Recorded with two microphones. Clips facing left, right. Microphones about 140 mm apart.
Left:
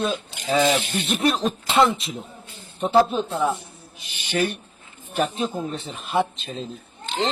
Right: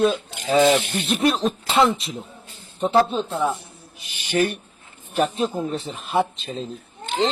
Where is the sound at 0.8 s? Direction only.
60° right (ahead or behind).